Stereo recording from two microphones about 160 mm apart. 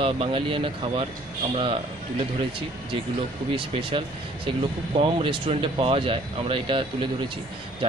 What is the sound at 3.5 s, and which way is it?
Speech, 35° right (ahead or behind).